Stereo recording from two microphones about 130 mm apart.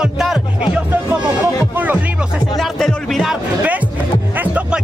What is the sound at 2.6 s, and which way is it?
Music, centre (ahead or behind).